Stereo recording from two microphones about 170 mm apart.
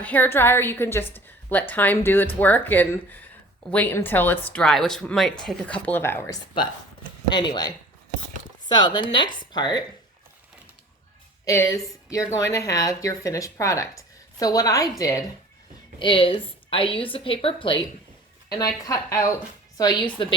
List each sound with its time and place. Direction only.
0.0 s a woman's voice: 10° left (ahead or behind)
7.3 s speech: 25° left (ahead or behind)
8.7 s speech: 25° left (ahead or behind)
11.4 s speech: 20° left (ahead or behind)
16.0 s a woman's voice: 30° left (ahead or behind)
18.5 s speech: 20° left (ahead or behind)